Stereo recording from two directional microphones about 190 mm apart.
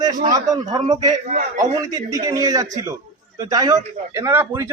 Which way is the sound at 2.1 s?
15° right (ahead or behind).